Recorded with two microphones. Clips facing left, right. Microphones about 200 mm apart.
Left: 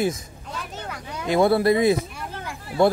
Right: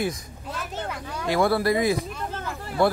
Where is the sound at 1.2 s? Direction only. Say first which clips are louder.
Left 4 dB; 20° left (ahead or behind).